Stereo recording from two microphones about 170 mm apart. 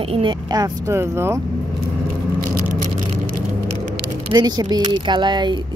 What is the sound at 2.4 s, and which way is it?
Vehicle, 50° right (ahead or behind).